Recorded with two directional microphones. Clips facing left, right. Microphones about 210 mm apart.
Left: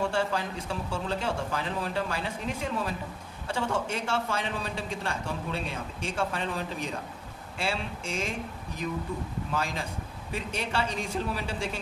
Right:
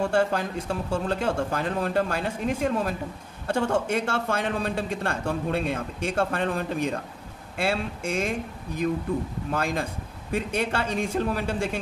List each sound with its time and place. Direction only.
0.1 s speech: 50° right (ahead or behind)
9.5 s speech: 55° right (ahead or behind)